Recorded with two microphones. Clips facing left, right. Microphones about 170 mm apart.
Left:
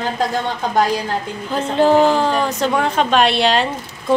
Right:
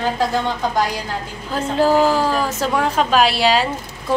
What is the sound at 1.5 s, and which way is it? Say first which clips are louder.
A woman's voice: left 2 dB; 5° right (ahead or behind).